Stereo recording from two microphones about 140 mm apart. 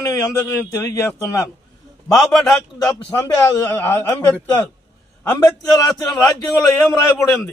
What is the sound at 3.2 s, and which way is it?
Speech, 25° left (ahead or behind).